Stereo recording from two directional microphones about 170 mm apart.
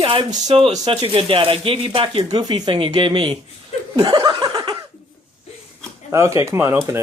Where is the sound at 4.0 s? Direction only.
25° right (ahead or behind).